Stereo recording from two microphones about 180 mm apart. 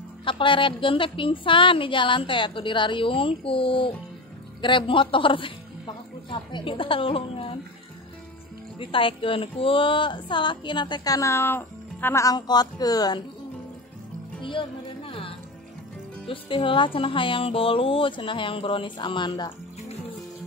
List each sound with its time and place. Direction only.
0.2 s a woman's voice: 30° left (ahead or behind)
8.7 s speech: 30° left (ahead or behind)
14.4 s music: 25° left (ahead or behind)
16.3 s speech: 30° left (ahead or behind)